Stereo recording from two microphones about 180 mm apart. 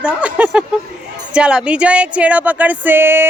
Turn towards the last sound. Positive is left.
turn(degrees=-10)  # may be behind; listen again after turning